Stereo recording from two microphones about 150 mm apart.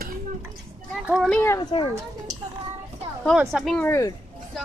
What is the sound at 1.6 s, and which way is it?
Speech, 35° left (ahead or behind).